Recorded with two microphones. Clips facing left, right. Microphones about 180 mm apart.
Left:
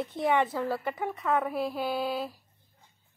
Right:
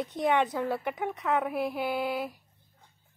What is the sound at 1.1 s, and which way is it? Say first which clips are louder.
Speech: left 1 dB; centre (ahead or behind).